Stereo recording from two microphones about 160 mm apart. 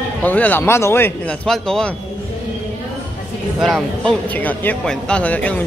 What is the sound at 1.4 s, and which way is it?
Speech, 5° left (ahead or behind).